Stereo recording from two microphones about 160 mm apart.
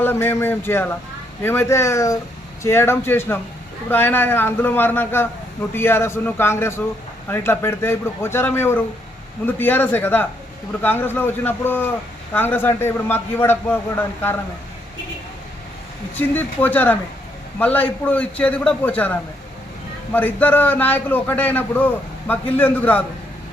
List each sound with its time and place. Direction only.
0.0 s a man's voice: 15° left (ahead or behind)
16.1 s a man's voice: 10° left (ahead or behind)
20.1 s a man's voice: 10° left (ahead or behind)